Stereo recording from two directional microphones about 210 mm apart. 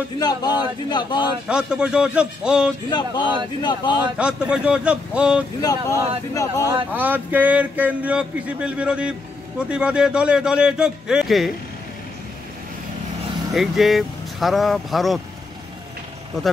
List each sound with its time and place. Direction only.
0.2 s speech: 20° left (ahead or behind)
1.5 s a man's voice: 5° right (ahead or behind)
2.9 s speech: 20° left (ahead or behind)
4.2 s a man's voice: 5° right (ahead or behind)
5.6 s speech: 15° left (ahead or behind)
6.6 s a man's voice: 10° right (ahead or behind)
13.5 s speech: centre (ahead or behind)